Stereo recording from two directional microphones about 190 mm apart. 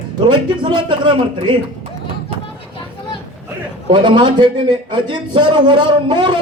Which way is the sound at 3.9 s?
25° right (ahead or behind).